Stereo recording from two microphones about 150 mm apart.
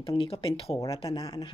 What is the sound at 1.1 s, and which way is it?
Speech, 25° left (ahead or behind).